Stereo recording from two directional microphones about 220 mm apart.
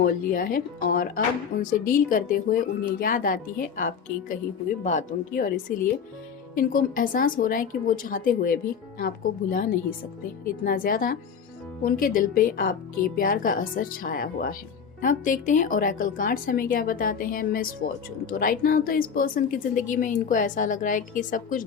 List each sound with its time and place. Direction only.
0.0 s a woman's voice: 40° left (ahead or behind)